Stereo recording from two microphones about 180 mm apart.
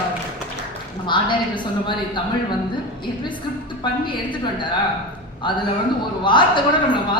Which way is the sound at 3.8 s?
25° left (ahead or behind).